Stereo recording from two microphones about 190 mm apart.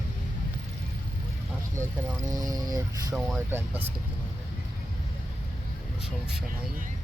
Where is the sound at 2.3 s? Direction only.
20° right (ahead or behind).